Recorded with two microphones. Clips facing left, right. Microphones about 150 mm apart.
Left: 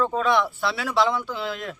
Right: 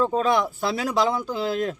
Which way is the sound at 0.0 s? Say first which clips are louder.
Right 1 dB; 35° right (ahead or behind).